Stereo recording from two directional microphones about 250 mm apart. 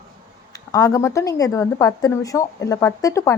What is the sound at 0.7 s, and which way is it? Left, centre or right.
Speech, centre.